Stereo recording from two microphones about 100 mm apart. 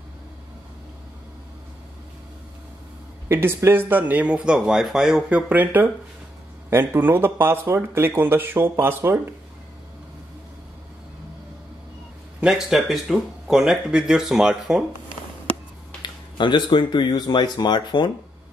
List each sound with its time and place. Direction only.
3.3 s speech: 20° right (ahead or behind); by 5.2 s 5° right (ahead or behind)
5.3 s speech: 15° right (ahead or behind)
12.4 s speech: 5° right (ahead or behind)
16.0 s speech: 50° left (ahead or behind)